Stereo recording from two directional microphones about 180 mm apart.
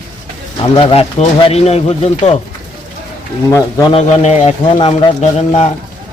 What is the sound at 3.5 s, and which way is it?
Speech, 20° left (ahead or behind).